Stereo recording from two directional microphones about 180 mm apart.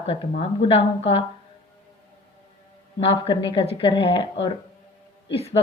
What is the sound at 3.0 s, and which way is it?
A woman's voice, 30° left (ahead or behind).